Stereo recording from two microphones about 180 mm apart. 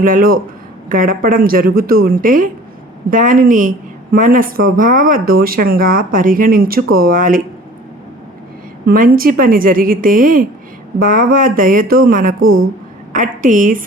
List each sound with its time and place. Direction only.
0.0 s speech: 50° right (ahead or behind)
8.9 s speech: 55° right (ahead or behind)
12.4 s a woman's voice: 90° right
13.1 s speech: 50° right (ahead or behind)